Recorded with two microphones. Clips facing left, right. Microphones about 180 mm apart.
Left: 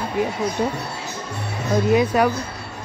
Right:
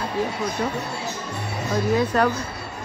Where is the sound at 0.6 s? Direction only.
20° left (ahead or behind).